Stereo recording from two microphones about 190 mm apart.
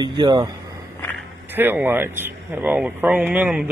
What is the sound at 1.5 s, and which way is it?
Speech, 10° right (ahead or behind).